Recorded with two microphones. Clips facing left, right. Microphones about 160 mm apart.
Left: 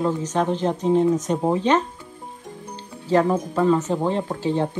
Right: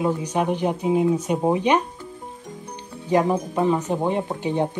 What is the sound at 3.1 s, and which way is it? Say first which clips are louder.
Speech: left 1 dB; 15° right (ahead or behind).